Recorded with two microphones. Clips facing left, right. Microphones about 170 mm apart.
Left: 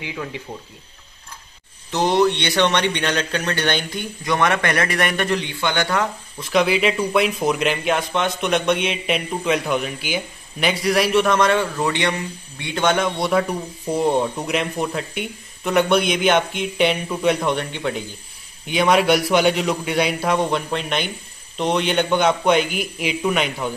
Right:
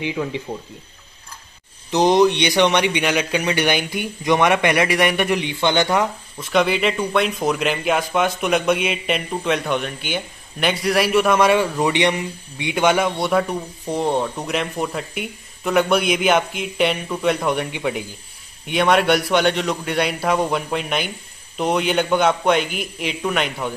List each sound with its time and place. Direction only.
0.0 s speech: 20° right (ahead or behind)
1.9 s a man's voice: 15° right (ahead or behind)
6.4 s speech: centre (ahead or behind)
17.6 s a man's voice: 10° right (ahead or behind)